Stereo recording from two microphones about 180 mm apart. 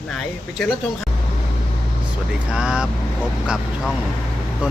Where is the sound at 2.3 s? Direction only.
5° right (ahead or behind).